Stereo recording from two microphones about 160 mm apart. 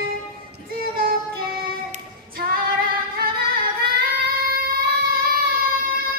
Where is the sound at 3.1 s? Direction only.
70° right (ahead or behind).